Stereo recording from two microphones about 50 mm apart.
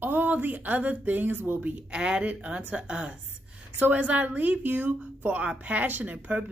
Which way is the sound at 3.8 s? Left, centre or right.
Right.